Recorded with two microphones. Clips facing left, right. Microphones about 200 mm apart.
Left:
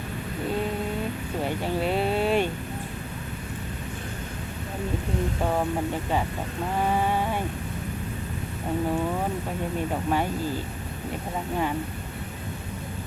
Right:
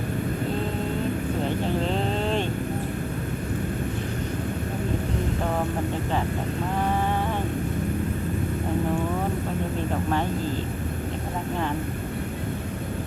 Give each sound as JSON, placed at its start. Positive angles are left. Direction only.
{"t": 1.8, "sound": "vehicle", "side_deg": 10}